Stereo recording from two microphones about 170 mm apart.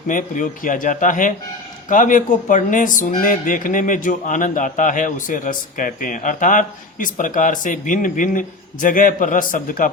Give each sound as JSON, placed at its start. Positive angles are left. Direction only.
{"t": 0.1, "sound": "speech", "side_deg": 50}